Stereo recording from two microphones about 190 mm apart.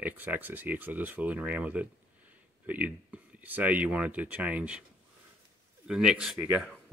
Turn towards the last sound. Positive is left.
turn(degrees=0)  # may be behind; listen again after turning